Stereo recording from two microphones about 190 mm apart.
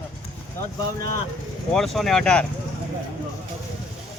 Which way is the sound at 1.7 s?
Centre (ahead or behind).